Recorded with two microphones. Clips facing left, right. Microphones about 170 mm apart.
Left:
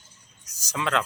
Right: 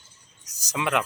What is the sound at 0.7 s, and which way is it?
Speech, 15° right (ahead or behind).